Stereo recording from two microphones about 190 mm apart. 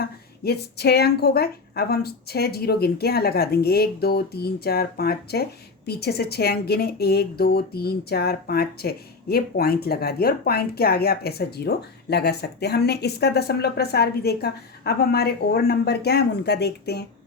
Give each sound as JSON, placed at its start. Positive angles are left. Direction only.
{"t": 0.0, "sound": "a woman's voice", "side_deg": 55}